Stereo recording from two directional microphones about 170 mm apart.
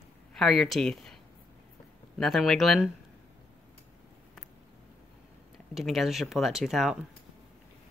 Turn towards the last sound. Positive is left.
turn(degrees=0)  # may be behind; listen again after turning